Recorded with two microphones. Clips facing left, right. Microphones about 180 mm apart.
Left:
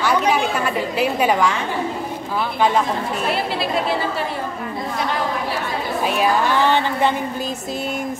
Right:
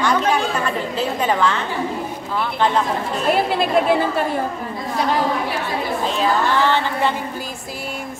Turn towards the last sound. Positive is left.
turn(degrees=15)  # may be behind; listen again after turning